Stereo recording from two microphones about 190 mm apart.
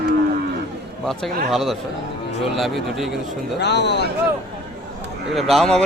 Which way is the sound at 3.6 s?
65° left (ahead or behind).